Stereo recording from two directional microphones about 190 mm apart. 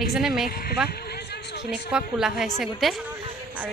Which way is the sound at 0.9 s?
60° left (ahead or behind).